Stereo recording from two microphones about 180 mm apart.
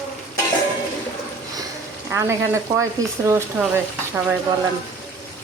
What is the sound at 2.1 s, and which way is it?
Speech, 15° right (ahead or behind).